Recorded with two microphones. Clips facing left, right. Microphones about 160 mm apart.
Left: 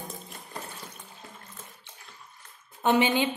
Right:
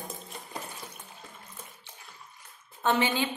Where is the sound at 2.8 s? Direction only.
15° left (ahead or behind).